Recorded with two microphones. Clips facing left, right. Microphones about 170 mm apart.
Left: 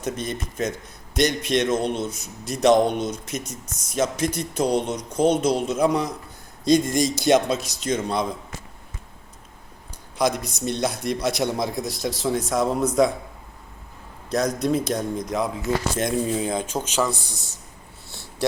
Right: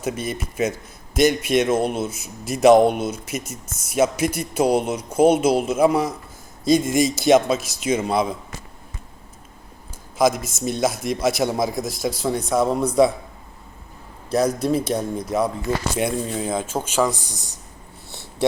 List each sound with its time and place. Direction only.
0.0 s a man's voice: 5° right (ahead or behind)
10.2 s a man's voice: 5° right (ahead or behind)
14.3 s a man's voice: 5° right (ahead or behind)
18.1 s a sound: 20° right (ahead or behind)